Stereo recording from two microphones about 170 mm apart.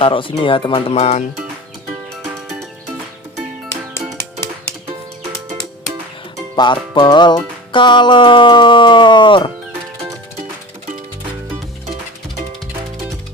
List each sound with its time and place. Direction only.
0.0 s speech: 30° left (ahead or behind)
6.6 s music: 25° left (ahead or behind)